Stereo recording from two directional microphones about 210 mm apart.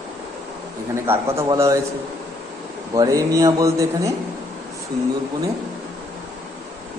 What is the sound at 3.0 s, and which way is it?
Speech, 15° right (ahead or behind).